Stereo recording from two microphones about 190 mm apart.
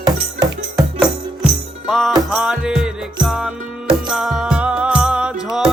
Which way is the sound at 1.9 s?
Centre (ahead or behind).